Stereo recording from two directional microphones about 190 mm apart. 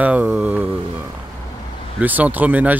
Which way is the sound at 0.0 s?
5° right (ahead or behind).